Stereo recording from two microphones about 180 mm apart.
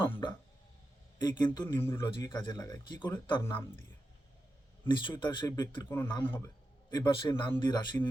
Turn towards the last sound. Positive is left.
turn(degrees=25)  # may be behind; listen again after turning